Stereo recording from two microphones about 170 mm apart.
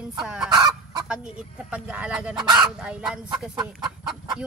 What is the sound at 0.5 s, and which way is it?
Fowl, 25° right (ahead or behind).